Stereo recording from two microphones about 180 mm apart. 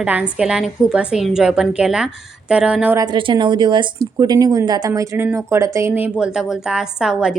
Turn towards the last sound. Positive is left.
turn(degrees=-5)  # may be behind; listen again after turning